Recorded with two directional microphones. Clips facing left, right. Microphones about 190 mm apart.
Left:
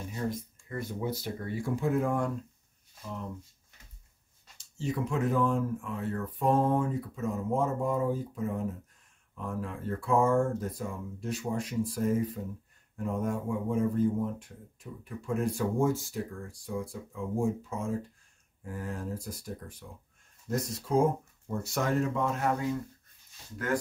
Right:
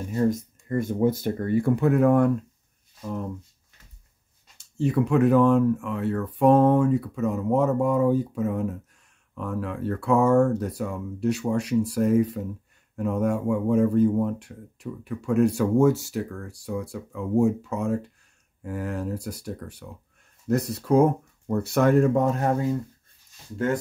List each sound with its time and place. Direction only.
0.1 s speech: 50° right (ahead or behind)
4.6 s speech: 60° right (ahead or behind); by 22.8 s 35° right (ahead or behind)